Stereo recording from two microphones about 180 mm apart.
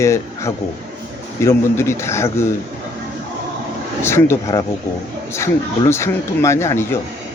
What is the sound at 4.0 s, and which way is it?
Speech, 15° left (ahead or behind).